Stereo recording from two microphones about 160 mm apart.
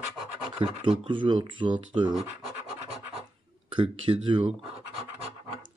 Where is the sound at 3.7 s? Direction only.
35° right (ahead or behind).